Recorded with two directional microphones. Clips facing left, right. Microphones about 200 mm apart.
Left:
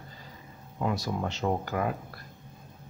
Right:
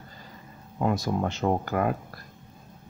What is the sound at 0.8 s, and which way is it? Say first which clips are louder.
Speech: right 4 dB; 50° right (ahead or behind).